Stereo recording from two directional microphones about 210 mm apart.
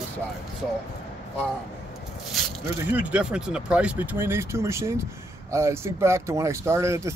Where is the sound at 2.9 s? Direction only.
5° right (ahead or behind).